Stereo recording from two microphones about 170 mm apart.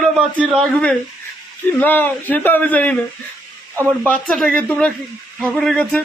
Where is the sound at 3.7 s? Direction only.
15° right (ahead or behind).